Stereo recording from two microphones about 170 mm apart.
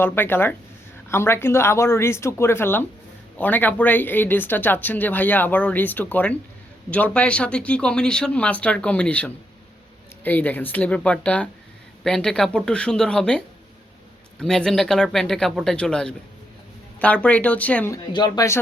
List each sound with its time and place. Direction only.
0.0 s speech: 10° left (ahead or behind)
17.9 s speech: 25° left (ahead or behind)